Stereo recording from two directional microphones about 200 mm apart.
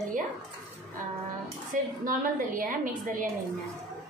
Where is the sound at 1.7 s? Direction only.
40° right (ahead or behind).